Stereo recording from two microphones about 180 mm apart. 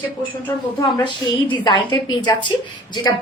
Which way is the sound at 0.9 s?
25° left (ahead or behind).